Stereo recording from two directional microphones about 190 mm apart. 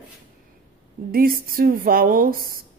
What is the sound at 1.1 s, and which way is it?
Speech, 50° right (ahead or behind).